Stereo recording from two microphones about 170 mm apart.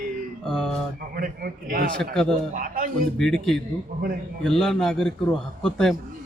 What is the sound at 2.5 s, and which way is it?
Speech, 55° right (ahead or behind).